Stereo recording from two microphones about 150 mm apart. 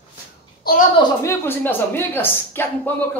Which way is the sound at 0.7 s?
90° left.